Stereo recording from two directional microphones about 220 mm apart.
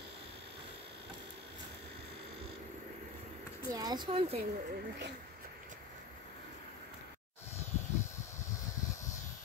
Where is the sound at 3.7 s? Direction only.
20° right (ahead or behind).